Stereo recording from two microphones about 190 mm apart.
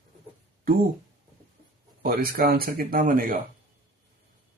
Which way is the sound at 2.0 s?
50° right (ahead or behind).